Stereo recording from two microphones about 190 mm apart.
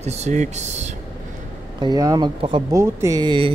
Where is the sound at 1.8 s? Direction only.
20° right (ahead or behind).